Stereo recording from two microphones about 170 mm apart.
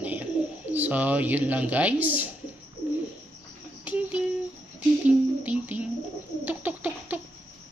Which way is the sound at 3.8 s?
10° right (ahead or behind).